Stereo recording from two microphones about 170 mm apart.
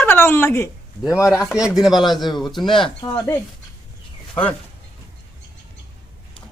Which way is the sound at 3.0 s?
30° left (ahead or behind).